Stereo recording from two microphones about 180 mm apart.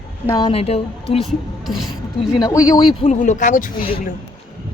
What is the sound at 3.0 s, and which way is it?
Speech, 40° left (ahead or behind).